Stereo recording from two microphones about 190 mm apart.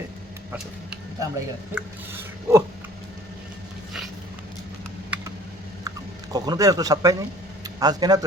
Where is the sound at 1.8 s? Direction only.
10° right (ahead or behind).